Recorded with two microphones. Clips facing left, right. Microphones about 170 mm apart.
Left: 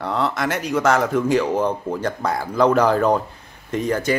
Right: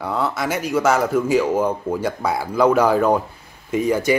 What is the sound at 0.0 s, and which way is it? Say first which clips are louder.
Speech: even; 5° right (ahead or behind).